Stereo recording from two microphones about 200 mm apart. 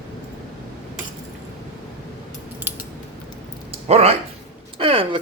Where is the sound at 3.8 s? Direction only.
30° right (ahead or behind).